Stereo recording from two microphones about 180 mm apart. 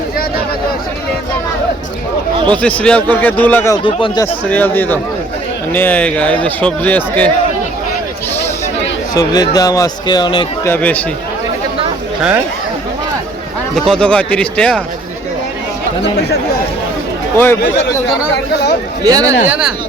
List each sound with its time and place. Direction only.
2.6 s a man's voice: 5° left (ahead or behind)
3.8 s a man's voice: 25° left (ahead or behind)
4.4 s a man's voice: 10° left (ahead or behind)
9.1 s a man's voice: 20° left (ahead or behind)
10.7 s a man's voice: 10° left (ahead or behind)
13.7 s speech: centre (ahead or behind)
17.3 s a man's voice: 10° left (ahead or behind)
17.6 s speech: 50° left (ahead or behind)
19.0 s speech: 20° right (ahead or behind)
19.5 s speech: 5° right (ahead or behind)